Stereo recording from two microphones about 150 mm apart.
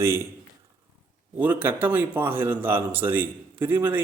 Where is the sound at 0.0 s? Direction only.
15° right (ahead or behind).